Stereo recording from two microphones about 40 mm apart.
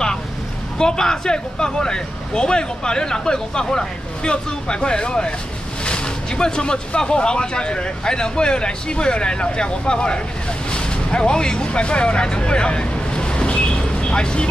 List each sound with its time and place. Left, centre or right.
0.7 s speech: centre
10.7 s vehicle: left